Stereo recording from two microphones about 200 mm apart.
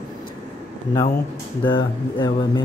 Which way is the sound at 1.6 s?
20° left (ahead or behind).